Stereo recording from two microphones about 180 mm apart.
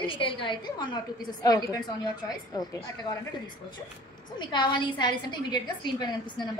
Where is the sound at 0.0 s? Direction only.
30° left (ahead or behind).